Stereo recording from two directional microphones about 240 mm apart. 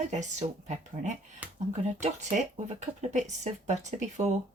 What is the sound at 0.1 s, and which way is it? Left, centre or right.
Speech, right.